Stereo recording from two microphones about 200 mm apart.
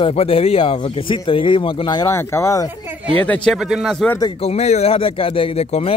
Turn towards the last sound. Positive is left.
turn(degrees=30)  # may be behind; listen again after turning